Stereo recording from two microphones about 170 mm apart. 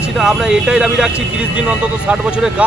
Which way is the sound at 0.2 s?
Centre (ahead or behind).